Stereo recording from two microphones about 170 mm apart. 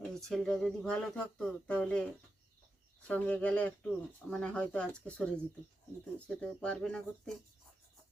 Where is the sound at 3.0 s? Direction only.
10° left (ahead or behind).